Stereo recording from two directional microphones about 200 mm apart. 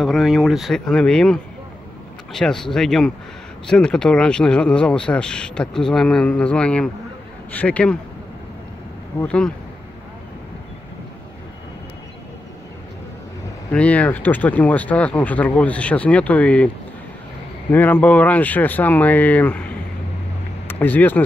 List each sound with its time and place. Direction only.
0.0 s speech: centre (ahead or behind)
9.2 s speech: 5° left (ahead or behind)
13.7 s speech: 5° left (ahead or behind)
20.6 s speech: 10° left (ahead or behind)